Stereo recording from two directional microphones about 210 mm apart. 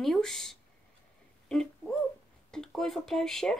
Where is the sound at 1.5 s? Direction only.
Centre (ahead or behind).